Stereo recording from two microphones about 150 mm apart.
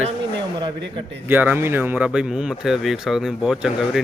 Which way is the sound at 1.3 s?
10° right (ahead or behind).